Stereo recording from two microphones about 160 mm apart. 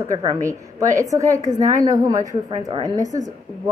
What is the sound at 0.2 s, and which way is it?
A woman's voice, 25° right (ahead or behind).